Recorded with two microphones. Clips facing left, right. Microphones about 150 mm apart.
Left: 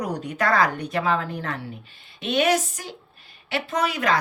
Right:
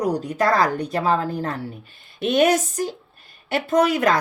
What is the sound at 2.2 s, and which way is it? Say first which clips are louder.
A woman's voice: right 4 dB; 45° right (ahead or behind).